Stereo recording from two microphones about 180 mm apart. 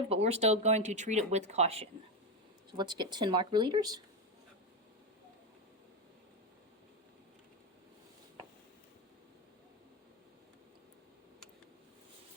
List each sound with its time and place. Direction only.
0.1 s speech: 35° right (ahead or behind)
2.7 s speech: 25° right (ahead or behind)